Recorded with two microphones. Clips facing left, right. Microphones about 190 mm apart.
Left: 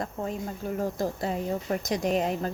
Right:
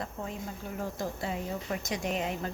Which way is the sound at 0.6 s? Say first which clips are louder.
Left 7 dB; 40° left (ahead or behind).